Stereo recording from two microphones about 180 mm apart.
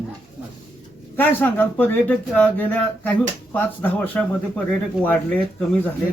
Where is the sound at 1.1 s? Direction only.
10° left (ahead or behind).